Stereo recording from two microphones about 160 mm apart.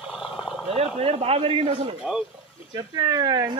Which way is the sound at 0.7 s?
40° right (ahead or behind).